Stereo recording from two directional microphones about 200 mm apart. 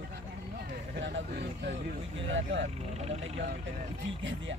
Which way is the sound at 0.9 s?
60° right (ahead or behind).